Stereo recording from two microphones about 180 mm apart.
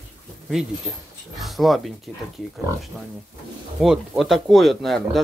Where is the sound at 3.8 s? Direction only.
Centre (ahead or behind).